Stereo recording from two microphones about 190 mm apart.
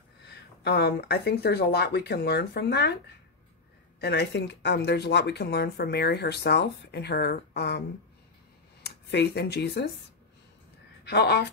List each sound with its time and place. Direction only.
0.3 s speech: 60° left (ahead or behind)
4.0 s speech: 60° left (ahead or behind)
8.8 s speech: 60° left (ahead or behind)
11.1 s speech: 60° left (ahead or behind)